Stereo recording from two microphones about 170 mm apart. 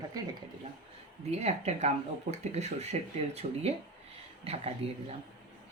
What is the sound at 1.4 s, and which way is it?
Speech, 40° right (ahead or behind).